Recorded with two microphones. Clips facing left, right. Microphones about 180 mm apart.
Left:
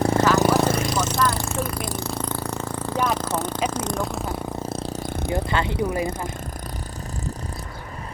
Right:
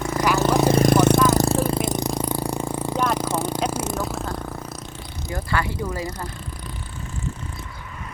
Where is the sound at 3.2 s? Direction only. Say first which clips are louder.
Right 1 dB; 10° right (ahead or behind).